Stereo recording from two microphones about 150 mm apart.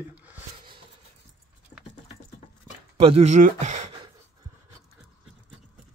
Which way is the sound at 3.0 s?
45° right (ahead or behind).